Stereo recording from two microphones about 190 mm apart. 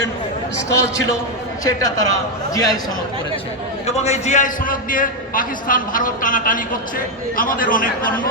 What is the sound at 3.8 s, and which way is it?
A man's voice, 35° left (ahead or behind).